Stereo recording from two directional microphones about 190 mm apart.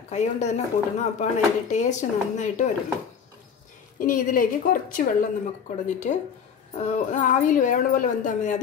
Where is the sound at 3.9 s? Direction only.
45° left (ahead or behind).